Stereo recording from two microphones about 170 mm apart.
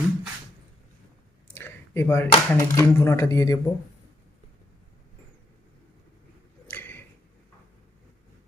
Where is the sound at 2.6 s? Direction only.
15° left (ahead or behind).